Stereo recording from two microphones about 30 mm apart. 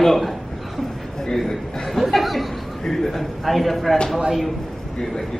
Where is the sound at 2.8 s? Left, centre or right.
Centre.